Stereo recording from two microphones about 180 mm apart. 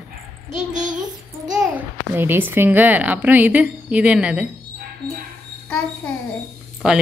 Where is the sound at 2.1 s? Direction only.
10° right (ahead or behind).